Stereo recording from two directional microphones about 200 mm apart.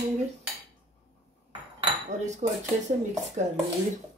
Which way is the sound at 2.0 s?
35° right (ahead or behind).